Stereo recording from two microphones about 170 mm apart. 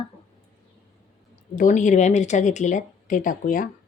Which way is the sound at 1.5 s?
50° left (ahead or behind).